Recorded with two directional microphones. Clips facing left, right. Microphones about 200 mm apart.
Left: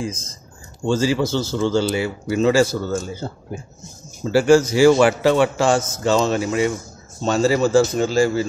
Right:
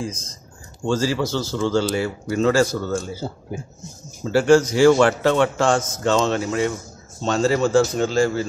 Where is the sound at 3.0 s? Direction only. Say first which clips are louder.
Even; 5° right (ahead or behind).